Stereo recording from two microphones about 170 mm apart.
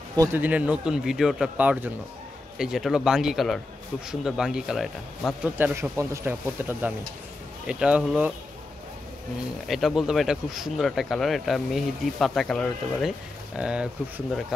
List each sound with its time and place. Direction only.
0.1 s speech: 20° right (ahead or behind)
0.4 s speech: 10° right (ahead or behind)
5.6 s speech: 15° right (ahead or behind)
9.7 s speech: centre (ahead or behind)